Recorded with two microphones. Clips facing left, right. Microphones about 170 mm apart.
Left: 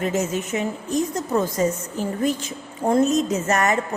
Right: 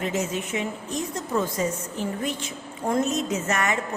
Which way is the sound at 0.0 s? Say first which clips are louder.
Left 4 dB; 45° left (ahead or behind).